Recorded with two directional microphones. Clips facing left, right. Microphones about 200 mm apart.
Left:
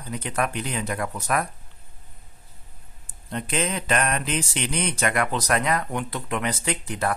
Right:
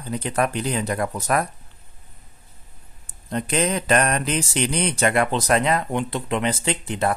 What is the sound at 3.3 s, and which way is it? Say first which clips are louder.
Speech: right 4 dB; 40° right (ahead or behind).